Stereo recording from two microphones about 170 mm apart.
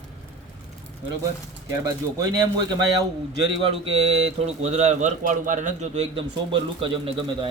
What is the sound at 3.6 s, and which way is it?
Speech, 35° right (ahead or behind).